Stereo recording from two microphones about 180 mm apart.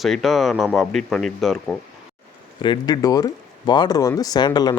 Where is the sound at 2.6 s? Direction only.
25° left (ahead or behind).